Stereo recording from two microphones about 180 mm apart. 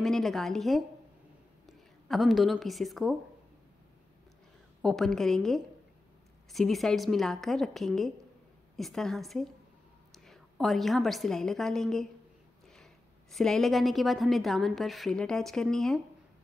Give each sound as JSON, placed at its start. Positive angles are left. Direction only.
{"t": 0.0, "sound": "a woman's voice", "side_deg": 0}
{"t": 1.7, "sound": "a sound", "side_deg": 0}
{"t": 2.6, "sound": "a woman's voice", "side_deg": 0}
{"t": 4.8, "sound": "a woman's voice", "side_deg": 0}